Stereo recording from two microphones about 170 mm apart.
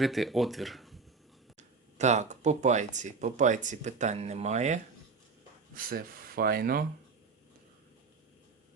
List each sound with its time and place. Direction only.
0.0 s speech: centre (ahead or behind)
1.5 s speech: 45° right (ahead or behind)
5.7 s speech: 60° right (ahead or behind)